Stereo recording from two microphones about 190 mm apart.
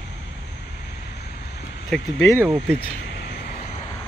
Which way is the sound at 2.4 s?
10° right (ahead or behind).